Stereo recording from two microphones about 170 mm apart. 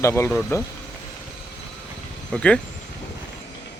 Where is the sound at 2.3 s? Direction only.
5° left (ahead or behind).